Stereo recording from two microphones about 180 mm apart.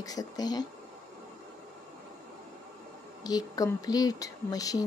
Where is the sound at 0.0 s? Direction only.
20° left (ahead or behind).